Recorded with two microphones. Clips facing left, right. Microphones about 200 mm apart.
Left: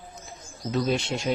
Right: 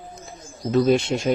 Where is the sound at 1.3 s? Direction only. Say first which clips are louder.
Right 5 dB; 50° right (ahead or behind).